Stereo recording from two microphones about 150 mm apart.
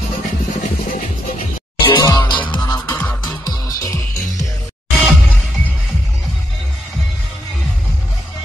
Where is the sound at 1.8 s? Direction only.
30° left (ahead or behind).